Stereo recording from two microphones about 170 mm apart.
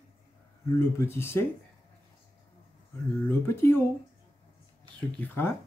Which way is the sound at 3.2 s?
15° left (ahead or behind).